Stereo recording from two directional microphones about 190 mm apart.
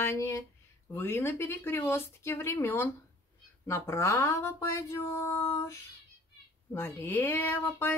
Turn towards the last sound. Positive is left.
turn(degrees=10)  # may be behind; listen again after turning